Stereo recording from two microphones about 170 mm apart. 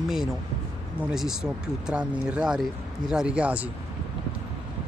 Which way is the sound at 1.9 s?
5° right (ahead or behind).